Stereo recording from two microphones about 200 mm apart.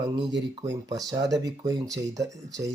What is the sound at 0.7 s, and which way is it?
Speech, 20° right (ahead or behind).